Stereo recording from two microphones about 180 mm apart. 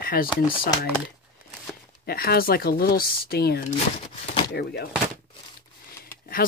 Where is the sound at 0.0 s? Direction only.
55° left (ahead or behind).